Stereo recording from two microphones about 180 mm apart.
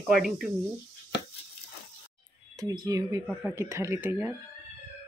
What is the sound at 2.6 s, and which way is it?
Speech, 20° right (ahead or behind).